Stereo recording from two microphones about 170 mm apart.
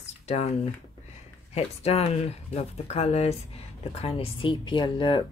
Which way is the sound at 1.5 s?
35° left (ahead or behind).